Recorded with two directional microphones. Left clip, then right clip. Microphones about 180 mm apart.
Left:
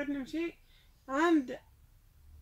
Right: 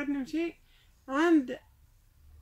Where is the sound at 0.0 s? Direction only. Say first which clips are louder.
Right 3 dB; 35° right (ahead or behind).